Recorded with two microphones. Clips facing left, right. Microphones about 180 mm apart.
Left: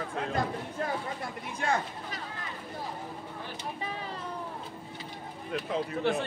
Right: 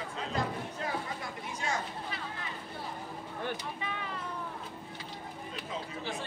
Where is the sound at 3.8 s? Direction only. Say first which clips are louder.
Left 2 dB; 35° left (ahead or behind).